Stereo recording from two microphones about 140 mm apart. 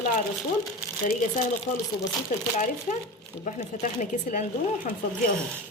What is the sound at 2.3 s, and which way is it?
Speech, 70° left (ahead or behind).